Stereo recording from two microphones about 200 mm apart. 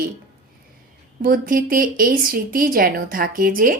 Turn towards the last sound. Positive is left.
turn(degrees=-45)  # may be behind; listen again after turning